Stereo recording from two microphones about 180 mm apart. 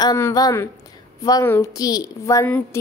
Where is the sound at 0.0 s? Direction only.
20° left (ahead or behind).